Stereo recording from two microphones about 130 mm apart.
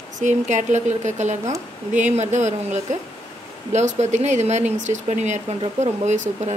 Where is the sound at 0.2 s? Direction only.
70° right (ahead or behind).